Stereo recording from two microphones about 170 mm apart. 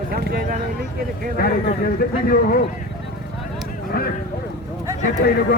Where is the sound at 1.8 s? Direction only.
60° left (ahead or behind).